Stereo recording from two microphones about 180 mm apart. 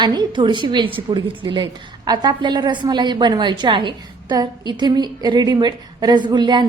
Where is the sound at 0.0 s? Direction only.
25° right (ahead or behind).